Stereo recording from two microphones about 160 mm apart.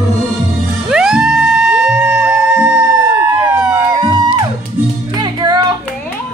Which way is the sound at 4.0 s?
30° right (ahead or behind).